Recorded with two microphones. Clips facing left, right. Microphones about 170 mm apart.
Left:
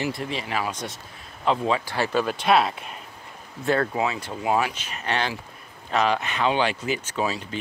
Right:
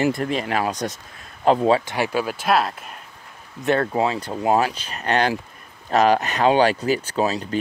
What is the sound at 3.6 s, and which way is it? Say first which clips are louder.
Speech: right 3 dB; 20° right (ahead or behind).